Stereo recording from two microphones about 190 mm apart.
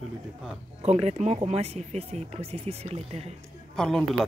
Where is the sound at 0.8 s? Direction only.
35° right (ahead or behind).